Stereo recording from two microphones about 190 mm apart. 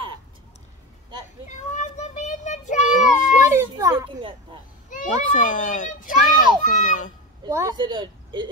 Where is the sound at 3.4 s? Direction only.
15° right (ahead or behind).